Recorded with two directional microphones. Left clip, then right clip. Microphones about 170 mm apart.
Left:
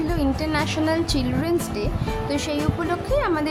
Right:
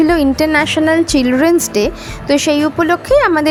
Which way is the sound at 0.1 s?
45° right (ahead or behind).